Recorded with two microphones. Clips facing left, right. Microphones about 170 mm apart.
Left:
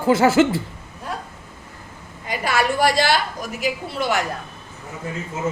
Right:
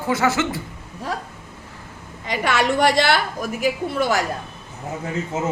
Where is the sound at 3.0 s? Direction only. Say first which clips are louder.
Right 1 dB; 60° right (ahead or behind).